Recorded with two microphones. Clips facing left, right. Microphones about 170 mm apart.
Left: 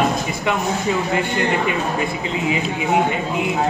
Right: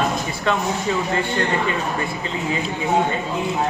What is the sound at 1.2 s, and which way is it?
A man's voice, 15° left (ahead or behind).